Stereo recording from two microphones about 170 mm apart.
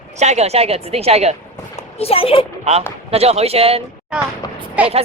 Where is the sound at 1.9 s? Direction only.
35° left (ahead or behind).